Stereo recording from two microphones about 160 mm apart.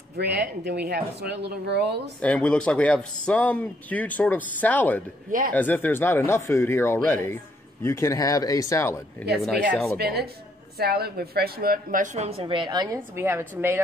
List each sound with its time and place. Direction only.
0.2 s speech: 85° right
2.2 s speech: 10° left (ahead or behind)
9.4 s speech: centre (ahead or behind)
9.9 s a woman's voice: 80° right; by 13.7 s 15° right (ahead or behind)